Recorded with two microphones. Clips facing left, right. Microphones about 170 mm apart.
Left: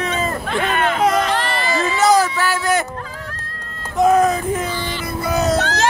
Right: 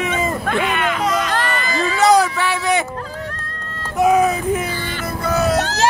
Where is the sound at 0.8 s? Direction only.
45° left (ahead or behind).